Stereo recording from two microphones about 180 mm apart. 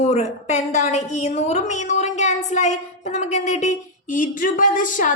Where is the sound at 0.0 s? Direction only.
40° left (ahead or behind).